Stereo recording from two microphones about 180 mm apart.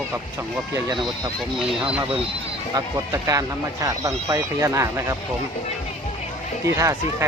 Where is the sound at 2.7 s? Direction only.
15° right (ahead or behind).